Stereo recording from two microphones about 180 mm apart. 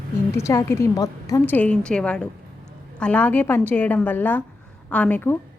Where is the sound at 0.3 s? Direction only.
15° left (ahead or behind).